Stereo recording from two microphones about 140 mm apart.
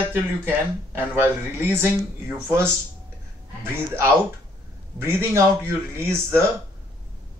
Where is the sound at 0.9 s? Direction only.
15° right (ahead or behind).